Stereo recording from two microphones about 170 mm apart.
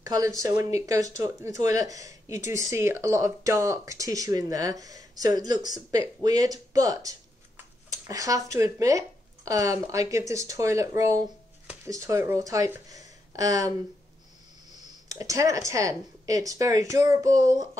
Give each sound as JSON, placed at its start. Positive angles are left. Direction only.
{"t": 0.0, "sound": "speech", "side_deg": -20}
{"t": 15.0, "sound": "speech", "side_deg": -20}